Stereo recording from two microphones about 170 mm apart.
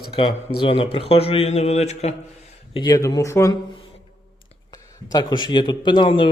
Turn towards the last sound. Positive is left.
turn(degrees=30)  # may be behind; listen again after turning